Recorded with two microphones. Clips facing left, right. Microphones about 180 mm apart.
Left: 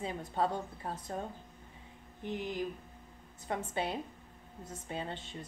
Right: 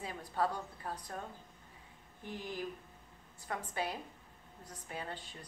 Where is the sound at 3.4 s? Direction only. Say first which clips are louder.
Left 3 dB; 25° left (ahead or behind).